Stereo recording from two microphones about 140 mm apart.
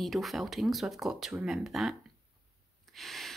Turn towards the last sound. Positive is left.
turn(degrees=0)  # may be behind; listen again after turning